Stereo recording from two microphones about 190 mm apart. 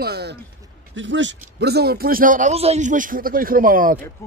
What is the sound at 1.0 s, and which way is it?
A man's voice, 75° right (ahead or behind).